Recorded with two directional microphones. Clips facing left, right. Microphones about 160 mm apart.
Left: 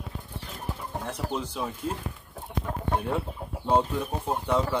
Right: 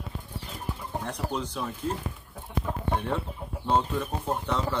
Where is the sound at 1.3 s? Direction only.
10° left (ahead or behind).